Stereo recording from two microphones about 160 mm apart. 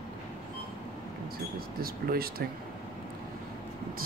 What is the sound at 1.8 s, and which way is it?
Speech, 70° right (ahead or behind).